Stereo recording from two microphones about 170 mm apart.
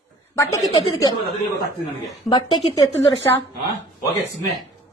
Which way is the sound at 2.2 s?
25° left (ahead or behind).